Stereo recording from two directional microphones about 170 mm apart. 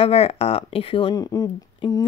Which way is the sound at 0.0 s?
35° left (ahead or behind).